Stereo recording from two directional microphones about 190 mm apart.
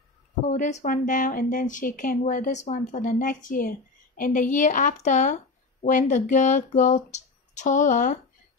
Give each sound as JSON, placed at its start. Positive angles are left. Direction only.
{"t": 0.5, "sound": "speech", "side_deg": 40}